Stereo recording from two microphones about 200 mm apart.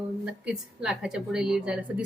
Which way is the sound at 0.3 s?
5° right (ahead or behind).